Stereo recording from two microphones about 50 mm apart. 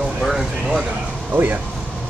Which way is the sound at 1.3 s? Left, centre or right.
Right.